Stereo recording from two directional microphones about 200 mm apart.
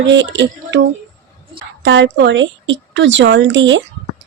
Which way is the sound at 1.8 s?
65° right (ahead or behind).